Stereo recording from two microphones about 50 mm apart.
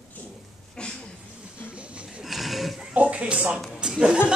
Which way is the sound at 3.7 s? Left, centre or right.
Centre.